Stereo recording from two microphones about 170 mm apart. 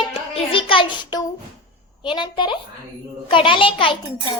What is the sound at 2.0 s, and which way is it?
A child's voice, 25° left (ahead or behind).